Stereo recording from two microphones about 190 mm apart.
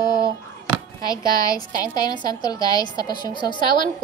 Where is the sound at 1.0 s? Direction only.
20° left (ahead or behind).